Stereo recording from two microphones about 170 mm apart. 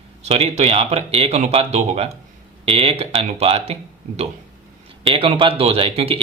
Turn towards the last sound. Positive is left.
turn(degrees=-35)  # may be behind; listen again after turning